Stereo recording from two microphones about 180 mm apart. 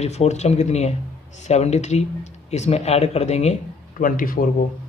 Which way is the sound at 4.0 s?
50° left (ahead or behind).